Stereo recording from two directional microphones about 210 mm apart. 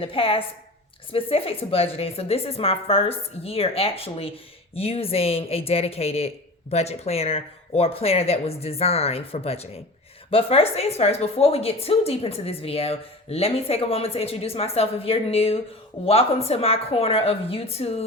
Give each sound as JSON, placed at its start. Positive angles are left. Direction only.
{"t": 0.0, "sound": "a woman's voice", "side_deg": 25}